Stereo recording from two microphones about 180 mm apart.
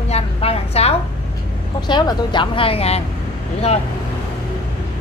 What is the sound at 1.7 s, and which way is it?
Speech, 25° left (ahead or behind).